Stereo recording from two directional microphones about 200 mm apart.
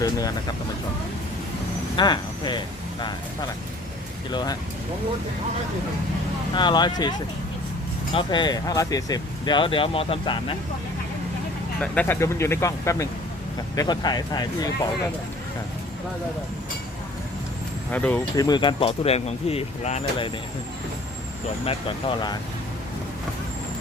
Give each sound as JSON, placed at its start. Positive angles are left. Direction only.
{"t": 0.0, "sound": "music", "side_deg": 20}
{"t": 2.0, "sound": "speech", "side_deg": 20}
{"t": 4.3, "sound": "speech", "side_deg": 20}
{"t": 6.5, "sound": "speech", "side_deg": 20}
{"t": 11.8, "sound": "speech", "side_deg": 10}
{"t": 17.9, "sound": "speech", "side_deg": 10}
{"t": 18.4, "sound": "speech", "side_deg": 20}
{"t": 21.6, "sound": "speech", "side_deg": 30}